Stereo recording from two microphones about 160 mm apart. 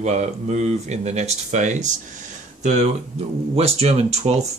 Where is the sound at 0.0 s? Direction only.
45° right (ahead or behind).